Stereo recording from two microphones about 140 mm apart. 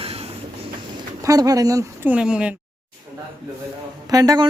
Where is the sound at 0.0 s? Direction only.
45° right (ahead or behind).